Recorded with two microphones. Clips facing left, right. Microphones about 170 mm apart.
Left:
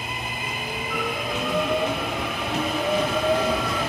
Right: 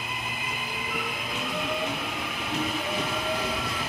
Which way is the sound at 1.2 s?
50° left (ahead or behind).